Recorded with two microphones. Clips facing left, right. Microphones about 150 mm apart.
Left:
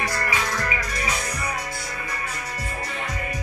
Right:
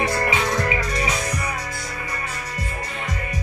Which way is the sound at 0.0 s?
25° right (ahead or behind).